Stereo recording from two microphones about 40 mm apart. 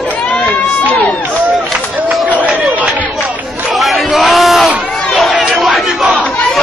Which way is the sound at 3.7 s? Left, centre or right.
Centre.